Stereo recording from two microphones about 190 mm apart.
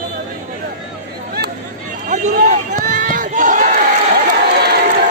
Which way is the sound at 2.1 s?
45° right (ahead or behind).